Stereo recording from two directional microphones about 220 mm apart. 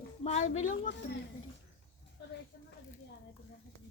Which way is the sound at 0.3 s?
30° left (ahead or behind).